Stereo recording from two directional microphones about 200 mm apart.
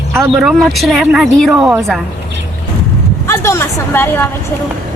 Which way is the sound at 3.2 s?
15° left (ahead or behind).